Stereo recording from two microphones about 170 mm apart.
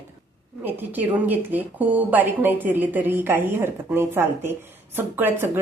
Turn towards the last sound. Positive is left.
turn(degrees=-15)  # may be behind; listen again after turning